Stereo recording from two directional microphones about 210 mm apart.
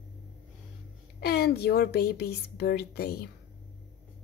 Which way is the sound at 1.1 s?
50° left (ahead or behind).